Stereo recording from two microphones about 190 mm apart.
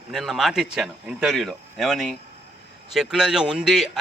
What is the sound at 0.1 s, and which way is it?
A man's voice, centre (ahead or behind).